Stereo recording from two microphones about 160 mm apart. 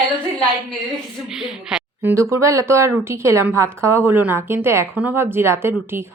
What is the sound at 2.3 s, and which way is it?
A woman's voice, 20° right (ahead or behind).